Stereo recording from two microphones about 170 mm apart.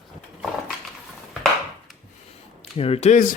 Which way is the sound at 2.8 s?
35° left (ahead or behind).